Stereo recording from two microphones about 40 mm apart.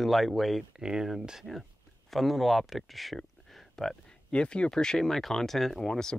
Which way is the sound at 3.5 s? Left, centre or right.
Centre.